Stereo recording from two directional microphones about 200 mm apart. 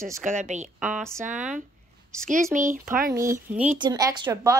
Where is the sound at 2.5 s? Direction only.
5° right (ahead or behind).